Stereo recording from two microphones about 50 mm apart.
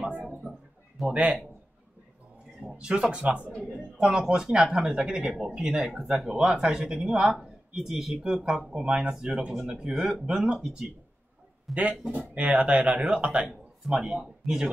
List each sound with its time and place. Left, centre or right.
0.1 s a sound: right
0.4 s a sound: centre
1.1 s speech: right
2.6 s speech: centre
11.7 s speech: right
13.8 s speech: centre
14.4 s speech: centre